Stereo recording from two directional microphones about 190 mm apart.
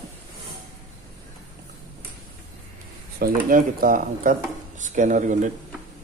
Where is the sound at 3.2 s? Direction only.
50° right (ahead or behind).